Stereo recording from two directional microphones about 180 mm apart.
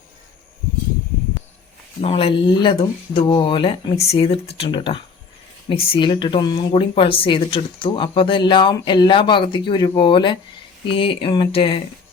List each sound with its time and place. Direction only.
2.0 s speech: 35° left (ahead or behind)